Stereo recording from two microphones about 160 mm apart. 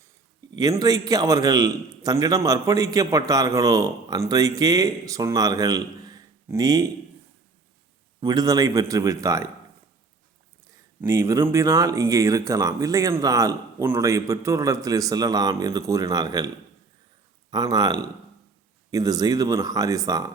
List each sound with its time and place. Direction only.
0.5 s a man's voice: 25° right (ahead or behind)
8.2 s a man's voice: 25° right (ahead or behind)
11.0 s a man's voice: 15° right (ahead or behind)
17.5 s a man's voice: 25° right (ahead or behind)